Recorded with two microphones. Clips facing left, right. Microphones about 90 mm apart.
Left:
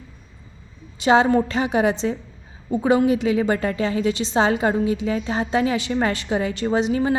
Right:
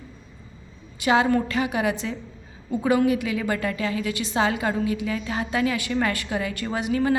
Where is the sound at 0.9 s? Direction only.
30° left (ahead or behind).